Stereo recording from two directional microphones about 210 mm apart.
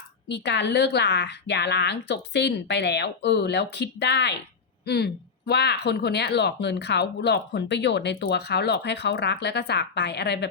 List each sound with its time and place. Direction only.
0.3 s speech: 55° left (ahead or behind)